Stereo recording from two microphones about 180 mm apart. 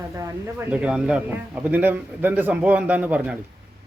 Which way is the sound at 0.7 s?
5° right (ahead or behind).